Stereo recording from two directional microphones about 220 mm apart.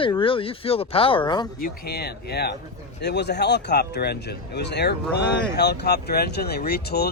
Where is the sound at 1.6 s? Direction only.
45° left (ahead or behind).